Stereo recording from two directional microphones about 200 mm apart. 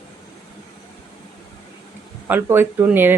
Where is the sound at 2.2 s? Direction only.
10° right (ahead or behind).